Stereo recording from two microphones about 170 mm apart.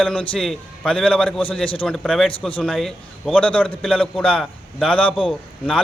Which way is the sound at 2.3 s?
30° left (ahead or behind).